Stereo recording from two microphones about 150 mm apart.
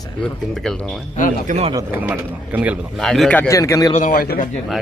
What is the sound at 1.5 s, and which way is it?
Speech, 45° right (ahead or behind).